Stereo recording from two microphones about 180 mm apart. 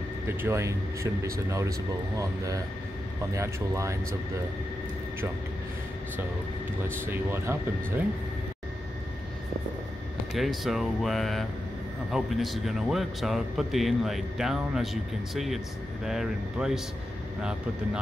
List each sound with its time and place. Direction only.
0.3 s speech: 15° right (ahead or behind)
7.1 s speech: 15° right (ahead or behind)
10.3 s speech: centre (ahead or behind)